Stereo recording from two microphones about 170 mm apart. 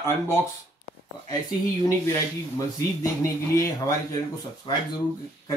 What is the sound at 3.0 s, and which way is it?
A man's voice, 20° left (ahead or behind).